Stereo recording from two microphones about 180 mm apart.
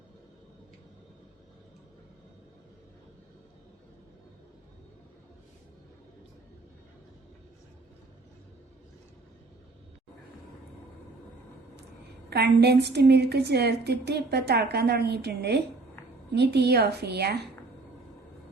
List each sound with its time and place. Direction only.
12.3 s a woman's voice: 65° right (ahead or behind)